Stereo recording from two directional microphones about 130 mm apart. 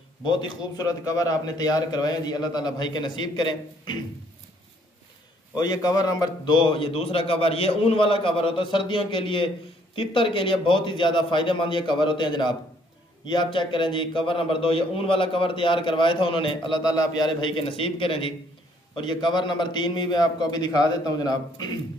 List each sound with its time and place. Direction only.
0.2 s a man's voice: 35° left (ahead or behind)
5.6 s a man's voice: 30° left (ahead or behind)